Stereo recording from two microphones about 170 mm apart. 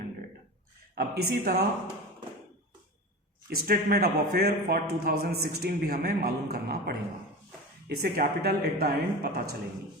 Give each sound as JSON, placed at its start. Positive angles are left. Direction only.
{"t": 0.9, "sound": "speech", "side_deg": -65}
{"t": 3.5, "sound": "speech", "side_deg": -60}